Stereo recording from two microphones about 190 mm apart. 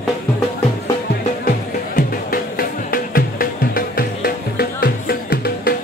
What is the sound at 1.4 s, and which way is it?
Music, 50° left (ahead or behind).